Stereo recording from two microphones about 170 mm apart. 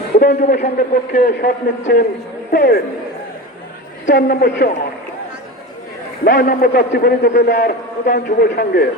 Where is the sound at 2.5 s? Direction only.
80° left.